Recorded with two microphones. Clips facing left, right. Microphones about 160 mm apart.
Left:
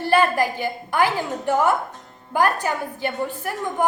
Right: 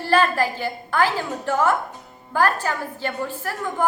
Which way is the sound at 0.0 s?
15° left (ahead or behind).